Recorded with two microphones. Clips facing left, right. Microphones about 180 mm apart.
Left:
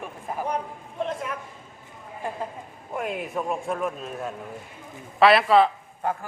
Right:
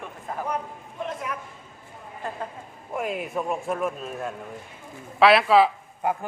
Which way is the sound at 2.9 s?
Centre (ahead or behind).